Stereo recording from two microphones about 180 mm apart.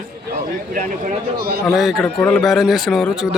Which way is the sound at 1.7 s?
Centre (ahead or behind).